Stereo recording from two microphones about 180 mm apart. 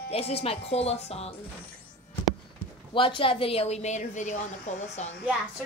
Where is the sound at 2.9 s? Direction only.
30° left (ahead or behind).